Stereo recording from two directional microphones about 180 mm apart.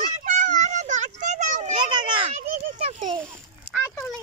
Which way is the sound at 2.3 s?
35° right (ahead or behind).